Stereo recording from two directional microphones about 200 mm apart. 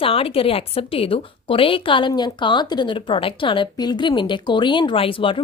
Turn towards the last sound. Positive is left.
turn(degrees=25)  # may be behind; listen again after turning